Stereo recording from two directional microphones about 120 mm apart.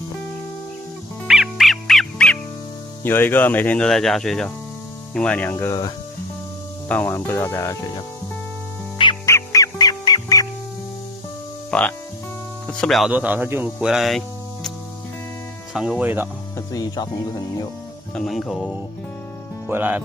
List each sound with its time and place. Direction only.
1.2 s music: 5° right (ahead or behind)
3.0 s speech: 20° left (ahead or behind)
6.9 s speech: 20° left (ahead or behind)
9.2 s music: 25° left (ahead or behind)
11.7 s speech: 5° left (ahead or behind)
12.6 s music: 5° left (ahead or behind)
13.1 s speech: 15° right (ahead or behind)
13.7 s speech: 5° right (ahead or behind)
15.7 s music: 5° right (ahead or behind)
16.5 s speech: 30° left (ahead or behind)
18.1 s music: centre (ahead or behind)
19.7 s speech: 15° right (ahead or behind)